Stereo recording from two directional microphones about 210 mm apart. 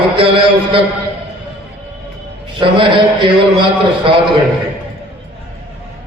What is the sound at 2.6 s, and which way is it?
Speech, 20° right (ahead or behind).